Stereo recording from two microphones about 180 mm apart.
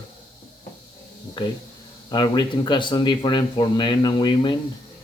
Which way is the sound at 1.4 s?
25° left (ahead or behind).